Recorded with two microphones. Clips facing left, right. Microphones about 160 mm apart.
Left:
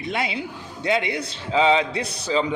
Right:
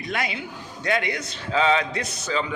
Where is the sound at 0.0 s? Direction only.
25° left (ahead or behind).